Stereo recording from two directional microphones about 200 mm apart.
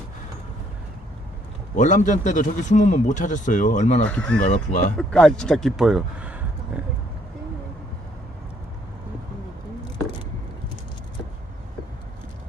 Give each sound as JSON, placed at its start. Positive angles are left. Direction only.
{"t": 1.7, "sound": "a man's voice", "side_deg": 40}
{"t": 4.0, "sound": "speech", "side_deg": 5}
{"t": 4.5, "sound": "a man's voice", "side_deg": 40}
{"t": 4.9, "sound": "speech", "side_deg": 5}